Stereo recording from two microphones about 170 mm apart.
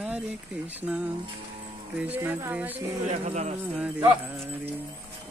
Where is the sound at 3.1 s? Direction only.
40° right (ahead or behind).